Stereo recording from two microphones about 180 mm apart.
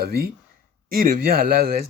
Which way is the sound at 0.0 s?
60° right (ahead or behind).